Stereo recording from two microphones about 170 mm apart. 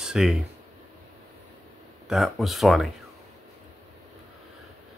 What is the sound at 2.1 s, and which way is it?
Speech, centre (ahead or behind).